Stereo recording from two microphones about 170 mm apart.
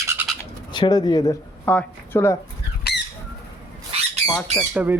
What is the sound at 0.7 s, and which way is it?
Speech, 25° left (ahead or behind).